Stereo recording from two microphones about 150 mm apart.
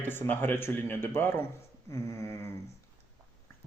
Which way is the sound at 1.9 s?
20° left (ahead or behind).